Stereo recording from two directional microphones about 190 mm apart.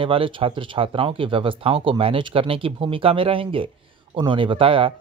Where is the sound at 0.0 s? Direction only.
30° right (ahead or behind).